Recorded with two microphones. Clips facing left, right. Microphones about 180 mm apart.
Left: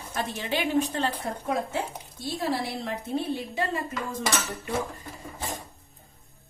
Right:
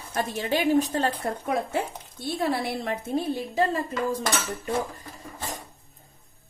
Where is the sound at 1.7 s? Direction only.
55° right (ahead or behind).